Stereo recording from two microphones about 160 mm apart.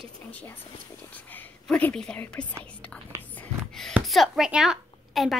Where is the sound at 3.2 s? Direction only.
10° left (ahead or behind).